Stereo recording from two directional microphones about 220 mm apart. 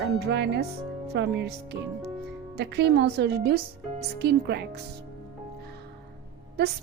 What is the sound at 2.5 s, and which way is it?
A woman's voice, 50° right (ahead or behind).